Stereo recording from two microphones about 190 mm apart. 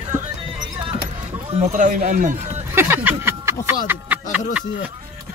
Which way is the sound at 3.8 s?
10° right (ahead or behind).